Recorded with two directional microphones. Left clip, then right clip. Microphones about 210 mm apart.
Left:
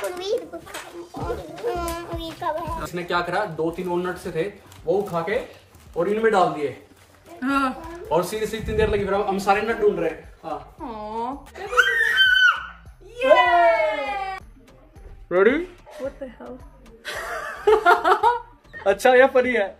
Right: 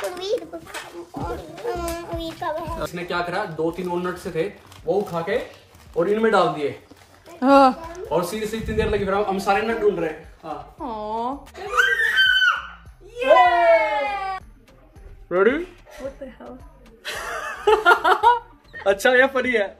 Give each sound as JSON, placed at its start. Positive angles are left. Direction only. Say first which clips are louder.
{"t": 0.1, "sound": "children playing", "louder": "even", "side_deg": -5}
{"t": 1.1, "sound": "child singing", "louder": "left 1 dB", "side_deg": 0}
{"t": 2.9, "sound": "speech", "louder": "left 4 dB", "side_deg": 0}
{"t": 7.3, "sound": "a woman's voice", "louder": "right 9 dB", "side_deg": -20}
{"t": 8.1, "sound": "a man's voice", "louder": "left 1 dB", "side_deg": 0}
{"t": 13.1, "sound": "a sound", "louder": "right 1 dB", "side_deg": 0}
{"t": 15.2, "sound": "speech", "louder": "left 1 dB", "side_deg": -15}
{"t": 17.0, "sound": "laughter", "louder": "right 1 dB", "side_deg": -10}
{"t": 18.9, "sound": "speech", "louder": "left 1 dB", "side_deg": 0}